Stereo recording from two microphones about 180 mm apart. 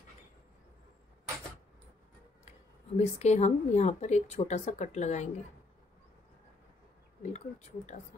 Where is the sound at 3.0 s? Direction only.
40° left (ahead or behind).